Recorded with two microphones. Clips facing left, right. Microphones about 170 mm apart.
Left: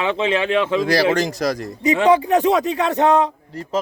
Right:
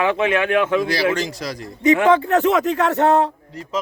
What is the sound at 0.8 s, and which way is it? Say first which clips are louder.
Speech: left 3 dB; 40° left (ahead or behind).